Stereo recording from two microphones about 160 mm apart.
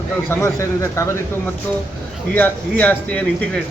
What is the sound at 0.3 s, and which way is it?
Speech, 20° left (ahead or behind).